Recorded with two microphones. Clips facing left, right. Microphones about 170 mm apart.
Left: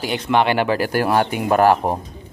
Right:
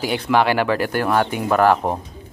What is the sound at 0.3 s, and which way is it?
Speech, 5° right (ahead or behind).